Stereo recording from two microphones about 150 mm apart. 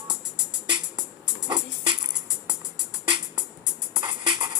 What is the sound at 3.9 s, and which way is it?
Music, 30° right (ahead or behind).